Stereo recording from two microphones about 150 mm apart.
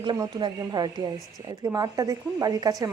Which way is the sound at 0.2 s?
25° right (ahead or behind).